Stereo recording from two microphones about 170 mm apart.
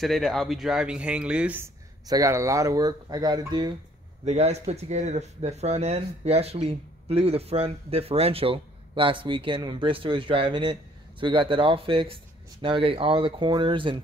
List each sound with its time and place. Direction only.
0.0 s speech: centre (ahead or behind)
2.0 s speech: 20° right (ahead or behind)
4.2 s speech: 40° right (ahead or behind)